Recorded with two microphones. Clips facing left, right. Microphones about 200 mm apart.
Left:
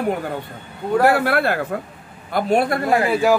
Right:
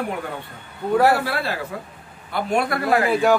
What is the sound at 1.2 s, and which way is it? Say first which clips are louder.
Speech: left 6 dB; 55° left (ahead or behind).